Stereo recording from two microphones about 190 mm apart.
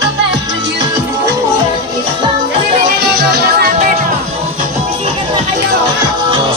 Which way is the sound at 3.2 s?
60° right (ahead or behind).